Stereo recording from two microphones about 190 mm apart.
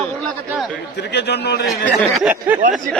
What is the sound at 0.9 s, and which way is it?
Speech, 60° left (ahead or behind).